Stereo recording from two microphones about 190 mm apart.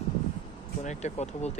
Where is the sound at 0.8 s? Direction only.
40° left (ahead or behind).